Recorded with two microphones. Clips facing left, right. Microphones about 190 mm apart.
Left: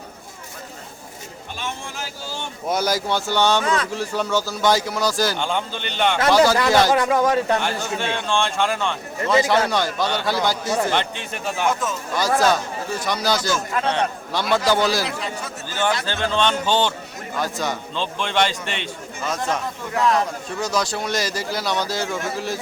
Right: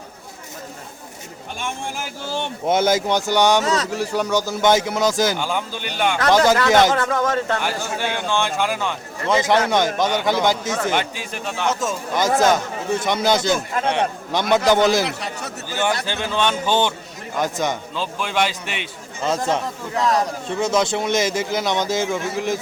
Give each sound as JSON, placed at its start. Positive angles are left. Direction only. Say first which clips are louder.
{"t": 2.6, "sound": "a man's voice", "louder": "right 4 dB", "side_deg": -25}
{"t": 5.4, "sound": "speech", "louder": "even", "side_deg": -5}
{"t": 6.3, "sound": "a man's voice", "louder": "right 2 dB", "side_deg": -20}
{"t": 6.9, "sound": "speech", "louder": "left 2 dB", "side_deg": 15}
{"t": 7.6, "sound": "speech", "louder": "even", "side_deg": -10}
{"t": 9.2, "sound": "a man's voice", "louder": "even", "side_deg": -20}
{"t": 10.8, "sound": "speech", "louder": "right 1 dB", "side_deg": -10}
{"t": 11.8, "sound": "a man's voice", "louder": "right 2 dB", "side_deg": -25}
{"t": 17.9, "sound": "speech", "louder": "even", "side_deg": -5}
{"t": 19.2, "sound": "a man's voice", "louder": "right 4 dB", "side_deg": -25}